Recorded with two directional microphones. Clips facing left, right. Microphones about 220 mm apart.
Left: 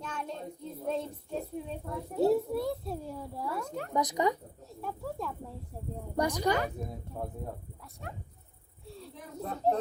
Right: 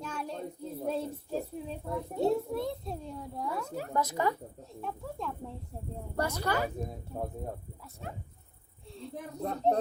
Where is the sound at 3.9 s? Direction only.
15° left (ahead or behind).